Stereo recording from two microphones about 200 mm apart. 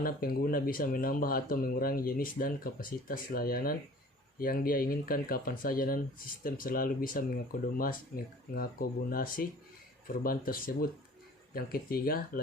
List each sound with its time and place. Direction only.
0.0 s speech: 45° left (ahead or behind)